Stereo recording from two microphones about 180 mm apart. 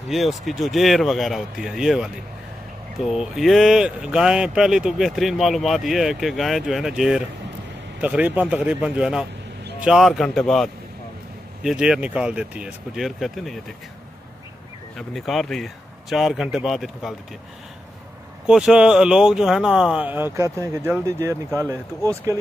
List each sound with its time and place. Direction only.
0.1 s a man's voice: centre (ahead or behind)
15.0 s speech: centre (ahead or behind)
18.5 s a man's voice: 5° right (ahead or behind)